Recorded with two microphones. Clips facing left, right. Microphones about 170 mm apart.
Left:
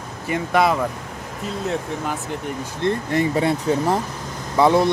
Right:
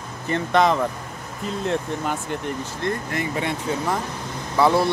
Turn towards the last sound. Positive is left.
turn(degrees=20)  # may be behind; listen again after turning